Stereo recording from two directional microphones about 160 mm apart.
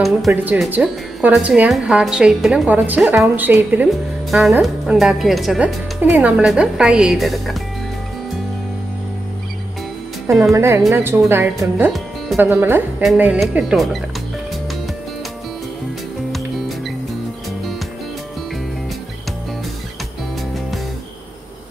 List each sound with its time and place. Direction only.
0.3 s speech: 10° right (ahead or behind)
10.5 s a woman's voice: 15° right (ahead or behind)
11.6 s speech: centre (ahead or behind)
12.4 s a woman's voice: 15° right (ahead or behind)
16.3 s music: centre (ahead or behind)